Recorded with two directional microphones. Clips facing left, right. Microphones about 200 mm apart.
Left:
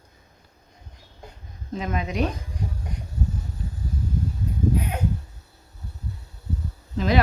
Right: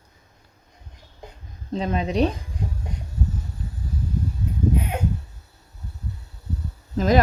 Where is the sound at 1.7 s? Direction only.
30° right (ahead or behind).